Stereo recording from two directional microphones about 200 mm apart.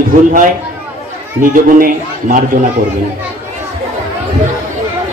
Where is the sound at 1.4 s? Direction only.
45° right (ahead or behind).